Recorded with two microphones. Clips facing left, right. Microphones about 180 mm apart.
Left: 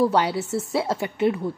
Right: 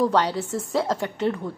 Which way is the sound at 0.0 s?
10° left (ahead or behind).